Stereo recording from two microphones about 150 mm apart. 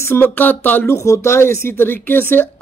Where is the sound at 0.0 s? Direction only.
15° left (ahead or behind).